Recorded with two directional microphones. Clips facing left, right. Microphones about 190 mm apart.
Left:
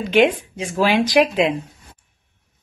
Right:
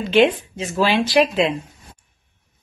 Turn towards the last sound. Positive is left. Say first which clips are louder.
# left 1 dB
turn(degrees=10)  # may be behind; listen again after turning